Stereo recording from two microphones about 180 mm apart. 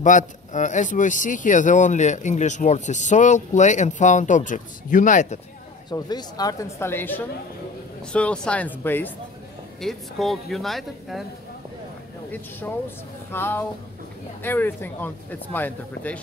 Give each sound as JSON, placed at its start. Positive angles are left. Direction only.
{"t": 0.0, "sound": "speech", "side_deg": 45}
{"t": 5.9, "sound": "speech", "side_deg": 25}
{"t": 9.8, "sound": "speech", "side_deg": 0}
{"t": 12.3, "sound": "speech", "side_deg": 10}